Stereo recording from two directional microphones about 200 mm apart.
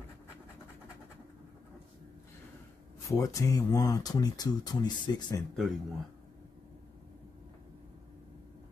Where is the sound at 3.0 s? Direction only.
15° left (ahead or behind).